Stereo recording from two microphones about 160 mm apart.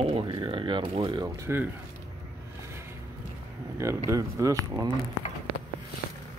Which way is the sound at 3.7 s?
20° right (ahead or behind).